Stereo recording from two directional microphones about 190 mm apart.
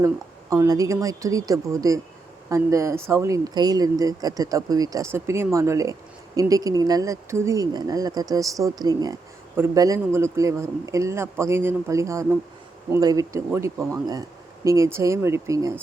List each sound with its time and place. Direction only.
0.5 s speech: 15° right (ahead or behind)